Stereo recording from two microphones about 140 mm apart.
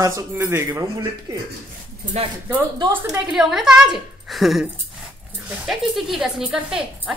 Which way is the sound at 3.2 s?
5° right (ahead or behind).